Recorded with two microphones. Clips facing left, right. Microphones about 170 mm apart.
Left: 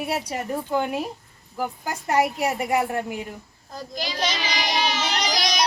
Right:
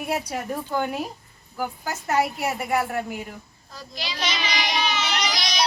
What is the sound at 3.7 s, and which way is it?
Child singing, 45° left (ahead or behind).